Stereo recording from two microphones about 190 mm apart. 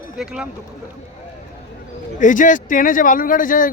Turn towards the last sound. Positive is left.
turn(degrees=45)  # may be behind; listen again after turning